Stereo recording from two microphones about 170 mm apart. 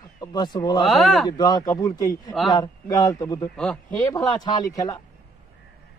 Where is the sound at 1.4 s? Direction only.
25° left (ahead or behind).